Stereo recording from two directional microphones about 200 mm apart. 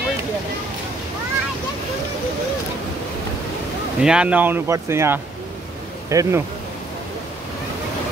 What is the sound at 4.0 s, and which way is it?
Speech, 5° right (ahead or behind).